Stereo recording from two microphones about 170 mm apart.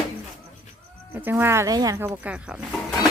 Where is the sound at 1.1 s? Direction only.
15° right (ahead or behind).